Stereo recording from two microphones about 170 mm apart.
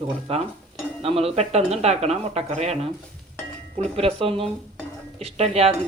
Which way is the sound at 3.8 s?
35° right (ahead or behind).